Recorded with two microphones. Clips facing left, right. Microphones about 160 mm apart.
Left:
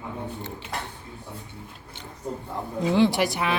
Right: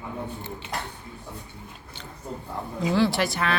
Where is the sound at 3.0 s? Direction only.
20° left (ahead or behind).